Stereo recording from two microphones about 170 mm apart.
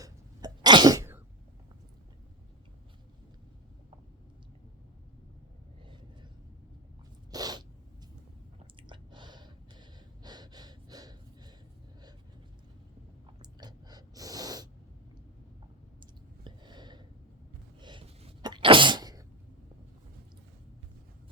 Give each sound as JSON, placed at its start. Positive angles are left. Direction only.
{"t": 0.0, "sound": "sneeze", "side_deg": -25}
{"t": 7.3, "sound": "sneeze", "side_deg": -25}
{"t": 8.5, "sound": "chewing", "side_deg": -25}
{"t": 10.2, "sound": "gasp", "side_deg": -25}
{"t": 13.4, "sound": "a sound", "side_deg": -25}
{"t": 16.4, "sound": "a sound", "side_deg": -25}
{"t": 18.4, "sound": "sneeze", "side_deg": -30}